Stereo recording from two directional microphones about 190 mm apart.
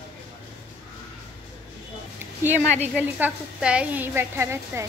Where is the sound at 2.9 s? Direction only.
10° right (ahead or behind).